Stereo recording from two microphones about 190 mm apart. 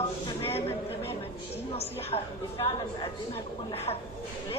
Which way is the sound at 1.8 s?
30° left (ahead or behind).